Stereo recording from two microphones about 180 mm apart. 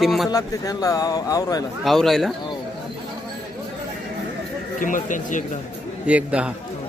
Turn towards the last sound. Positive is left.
turn(degrees=-5)  # may be behind; listen again after turning